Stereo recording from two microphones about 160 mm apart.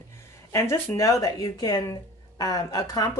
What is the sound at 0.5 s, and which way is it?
Speech, 15° left (ahead or behind).